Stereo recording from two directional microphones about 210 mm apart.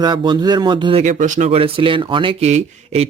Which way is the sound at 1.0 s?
35° right (ahead or behind).